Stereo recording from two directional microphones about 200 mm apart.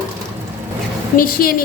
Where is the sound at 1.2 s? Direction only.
45° left (ahead or behind).